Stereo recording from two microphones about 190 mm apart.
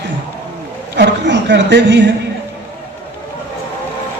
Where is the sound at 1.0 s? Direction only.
65° right (ahead or behind).